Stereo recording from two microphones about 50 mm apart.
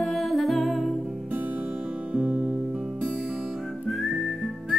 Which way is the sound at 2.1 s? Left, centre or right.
Right.